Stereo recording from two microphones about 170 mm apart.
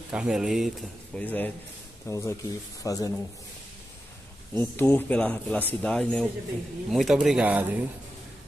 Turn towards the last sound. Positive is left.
turn(degrees=-10)  # may be behind; listen again after turning